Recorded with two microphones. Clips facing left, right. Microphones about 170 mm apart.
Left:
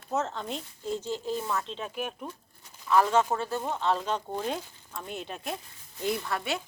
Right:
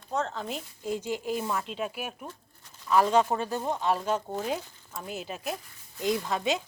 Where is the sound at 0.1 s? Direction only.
5° left (ahead or behind).